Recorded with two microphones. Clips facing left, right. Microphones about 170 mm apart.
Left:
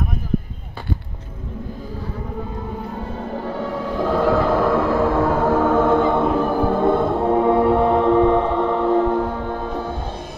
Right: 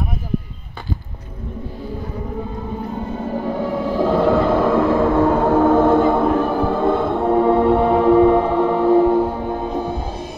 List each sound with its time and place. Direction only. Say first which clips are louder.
3.2 s music: right 4 dB; 10° right (ahead or behind)
6.4 s music: even; 5° left (ahead or behind)
7.2 s gong: right 1 dB; centre (ahead or behind); by 9.9 s 15° right (ahead or behind)